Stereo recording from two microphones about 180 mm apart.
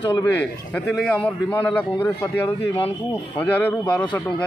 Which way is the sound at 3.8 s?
25° left (ahead or behind).